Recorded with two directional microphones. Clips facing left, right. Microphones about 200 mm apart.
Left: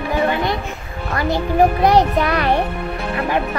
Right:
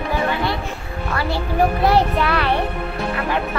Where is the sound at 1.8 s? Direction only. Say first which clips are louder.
Left 2 dB; 20° left (ahead or behind).